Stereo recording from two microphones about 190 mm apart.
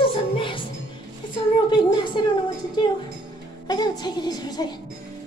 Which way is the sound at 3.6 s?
20° left (ahead or behind).